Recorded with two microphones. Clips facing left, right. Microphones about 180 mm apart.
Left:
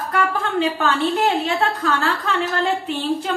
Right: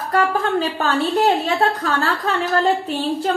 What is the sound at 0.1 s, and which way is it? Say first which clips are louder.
A woman's voice: right 4 dB; 35° right (ahead or behind).